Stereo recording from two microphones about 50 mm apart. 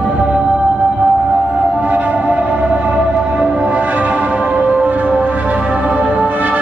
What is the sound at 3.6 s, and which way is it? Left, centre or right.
Music, right.